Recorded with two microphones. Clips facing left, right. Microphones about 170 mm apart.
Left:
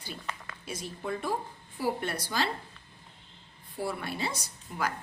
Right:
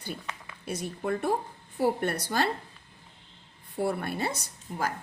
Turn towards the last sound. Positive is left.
turn(degrees=-40)  # may be behind; listen again after turning